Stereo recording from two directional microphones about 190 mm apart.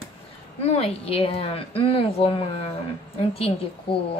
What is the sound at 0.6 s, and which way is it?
A woman's voice, 35° left (ahead or behind).